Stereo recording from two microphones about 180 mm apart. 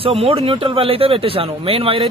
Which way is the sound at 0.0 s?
30° right (ahead or behind).